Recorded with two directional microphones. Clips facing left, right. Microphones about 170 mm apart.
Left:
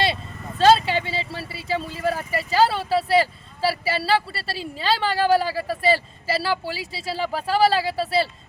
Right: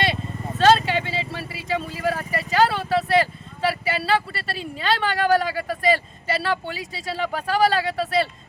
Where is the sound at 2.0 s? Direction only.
30° left (ahead or behind).